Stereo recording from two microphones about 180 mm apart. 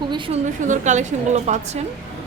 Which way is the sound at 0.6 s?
45° right (ahead or behind).